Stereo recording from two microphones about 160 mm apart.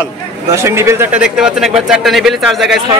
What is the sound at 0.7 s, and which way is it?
Speech, 15° right (ahead or behind).